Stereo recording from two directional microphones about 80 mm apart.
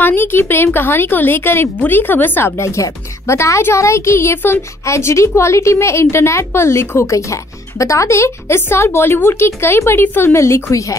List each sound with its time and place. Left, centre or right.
0.0 s a woman's voice: left